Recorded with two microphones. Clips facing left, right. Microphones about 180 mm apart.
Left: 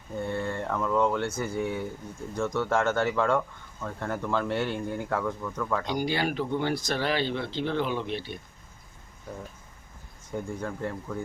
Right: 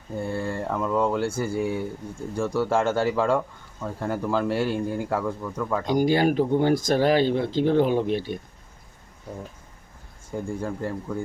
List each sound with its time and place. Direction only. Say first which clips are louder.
0.2 s speech: right 2 dB; 30° right (ahead or behind)
0.7 s speech: right 2 dB; 10° right (ahead or behind)
1.2 s speech: right 4 dB; 30° right (ahead or behind)
3.3 s speech: right 2 dB; 10° right (ahead or behind)
5.1 s speech: right 3 dB; 20° right (ahead or behind)
5.5 s speech: right 3 dB; 10° right (ahead or behind)
5.8 s speech: right 12 dB; 45° right (ahead or behind)
10.3 s speech: right 4 dB; 10° right (ahead or behind)